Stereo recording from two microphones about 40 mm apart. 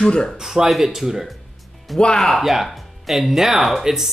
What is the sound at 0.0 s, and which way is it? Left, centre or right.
Speech, left.